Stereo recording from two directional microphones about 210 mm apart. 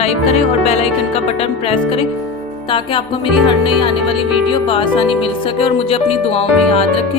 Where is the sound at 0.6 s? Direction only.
30° left (ahead or behind).